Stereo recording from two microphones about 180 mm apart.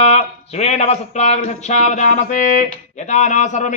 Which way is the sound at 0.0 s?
35° left (ahead or behind).